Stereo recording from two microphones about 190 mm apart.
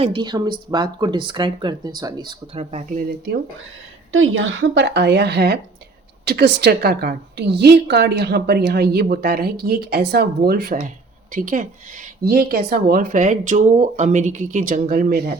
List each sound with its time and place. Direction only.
0.0 s speech: 25° right (ahead or behind)
2.6 s speech: 40° right (ahead or behind)
4.1 s a woman's voice: 90° right; by 15.4 s 55° right (ahead or behind)